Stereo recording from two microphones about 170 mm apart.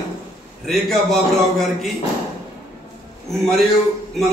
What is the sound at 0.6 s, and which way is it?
A man's voice, centre (ahead or behind).